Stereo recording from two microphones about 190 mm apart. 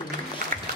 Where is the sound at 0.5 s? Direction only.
45° right (ahead or behind).